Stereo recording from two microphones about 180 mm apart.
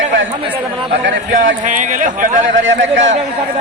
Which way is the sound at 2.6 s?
90° right.